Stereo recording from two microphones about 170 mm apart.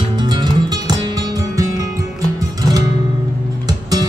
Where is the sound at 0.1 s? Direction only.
25° right (ahead or behind).